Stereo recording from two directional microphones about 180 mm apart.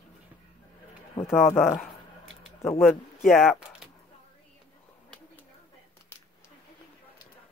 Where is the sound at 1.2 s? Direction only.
30° left (ahead or behind).